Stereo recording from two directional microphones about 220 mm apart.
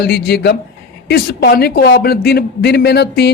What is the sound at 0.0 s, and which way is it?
Speech, 45° left (ahead or behind).